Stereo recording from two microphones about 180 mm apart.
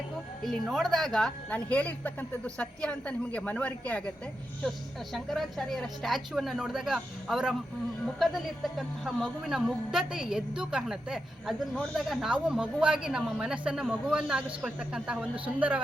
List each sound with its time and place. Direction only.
0.4 s speech: centre (ahead or behind)
5.1 s speech: centre (ahead or behind)